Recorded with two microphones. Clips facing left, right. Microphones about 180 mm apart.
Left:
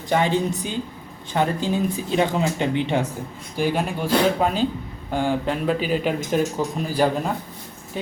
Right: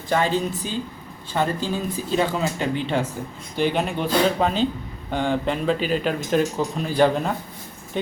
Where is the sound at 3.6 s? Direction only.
10° left (ahead or behind).